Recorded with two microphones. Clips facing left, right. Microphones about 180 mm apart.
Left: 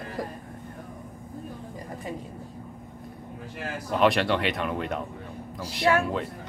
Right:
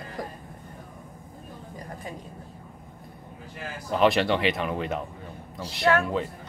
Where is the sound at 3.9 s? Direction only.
Centre (ahead or behind).